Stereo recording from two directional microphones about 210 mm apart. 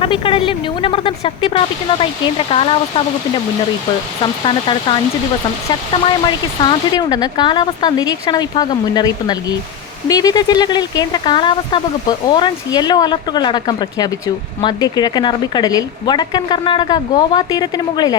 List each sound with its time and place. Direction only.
0.0 s speech: 25° left (ahead or behind)
4.4 s speech: 25° left (ahead or behind)
6.2 s speech: 20° left (ahead or behind)